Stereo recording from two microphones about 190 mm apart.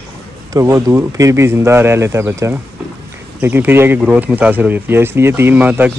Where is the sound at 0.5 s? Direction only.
15° right (ahead or behind).